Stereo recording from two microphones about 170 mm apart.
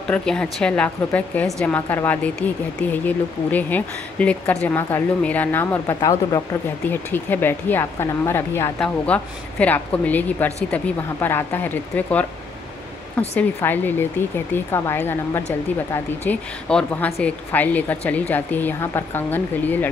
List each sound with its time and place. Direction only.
0.1 s a woman's voice: 5° left (ahead or behind)
13.4 s a woman's voice: 10° left (ahead or behind)